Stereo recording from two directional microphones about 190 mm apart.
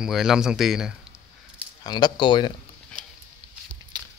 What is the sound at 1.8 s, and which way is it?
Speech, 20° left (ahead or behind).